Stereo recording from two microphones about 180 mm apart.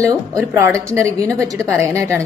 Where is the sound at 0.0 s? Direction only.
20° right (ahead or behind).